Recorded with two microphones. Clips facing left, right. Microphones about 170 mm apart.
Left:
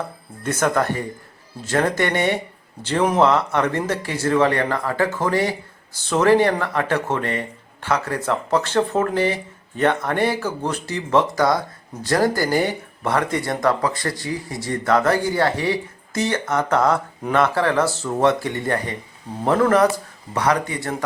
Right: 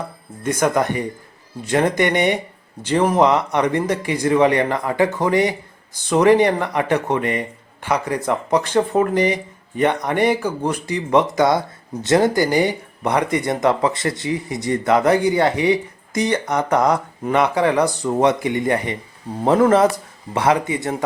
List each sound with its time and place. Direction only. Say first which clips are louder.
0.4 s speech: right 2 dB; 10° right (ahead or behind)